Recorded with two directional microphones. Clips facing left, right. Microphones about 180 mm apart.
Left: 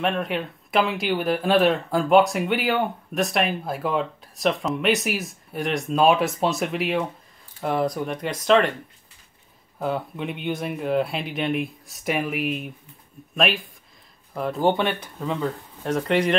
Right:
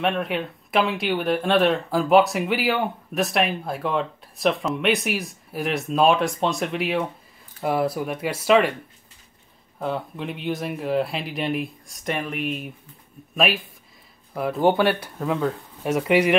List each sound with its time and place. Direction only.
0.0 s speech: centre (ahead or behind)
9.8 s speech: centre (ahead or behind)